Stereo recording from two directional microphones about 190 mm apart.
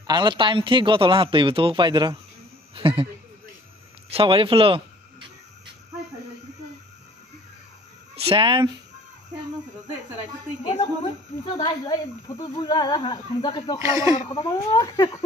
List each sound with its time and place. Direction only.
0.0 s a man's voice: 25° right (ahead or behind)
4.1 s a man's voice: 30° right (ahead or behind)
8.2 s speech: 30° right (ahead or behind)
11.4 s speech: 25° left (ahead or behind)
13.7 s speech: 15° right (ahead or behind)
14.3 s speech: 20° left (ahead or behind)